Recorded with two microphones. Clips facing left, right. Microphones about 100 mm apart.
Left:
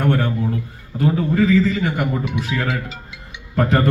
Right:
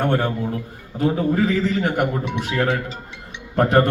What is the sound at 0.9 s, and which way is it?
A man's voice, 35° right (ahead or behind).